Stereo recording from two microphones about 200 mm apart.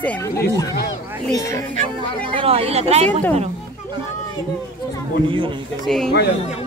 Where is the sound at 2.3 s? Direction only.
30° right (ahead or behind).